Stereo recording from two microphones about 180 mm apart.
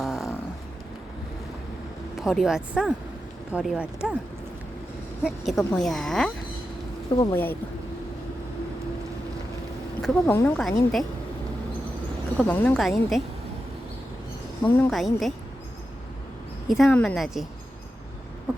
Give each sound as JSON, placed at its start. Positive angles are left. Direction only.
{"t": 0.0, "sound": "a sound", "side_deg": 0}
{"t": 2.1, "sound": "speech", "side_deg": 0}
{"t": 5.2, "sound": "speech", "side_deg": 5}
{"t": 7.1, "sound": "speech", "side_deg": 25}
{"t": 10.0, "sound": "speech", "side_deg": 5}
{"t": 12.4, "sound": "speech", "side_deg": 10}
{"t": 14.6, "sound": "speech", "side_deg": 5}
{"t": 16.6, "sound": "speech", "side_deg": 0}